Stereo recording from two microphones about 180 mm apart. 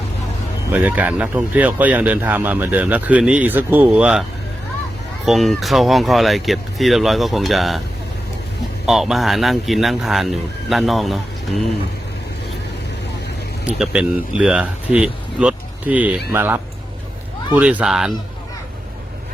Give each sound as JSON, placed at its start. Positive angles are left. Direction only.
{"t": 0.7, "sound": "speech", "side_deg": -10}
{"t": 5.2, "sound": "speech", "side_deg": 0}
{"t": 8.9, "sound": "speech", "side_deg": 0}
{"t": 13.7, "sound": "speech", "side_deg": -5}